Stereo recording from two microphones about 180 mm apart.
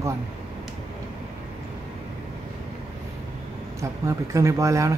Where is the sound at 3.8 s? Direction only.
15° right (ahead or behind).